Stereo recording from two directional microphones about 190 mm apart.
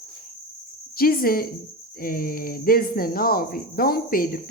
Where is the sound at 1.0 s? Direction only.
50° left (ahead or behind).